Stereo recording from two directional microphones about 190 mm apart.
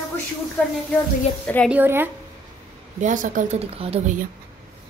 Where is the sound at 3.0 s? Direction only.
40° right (ahead or behind).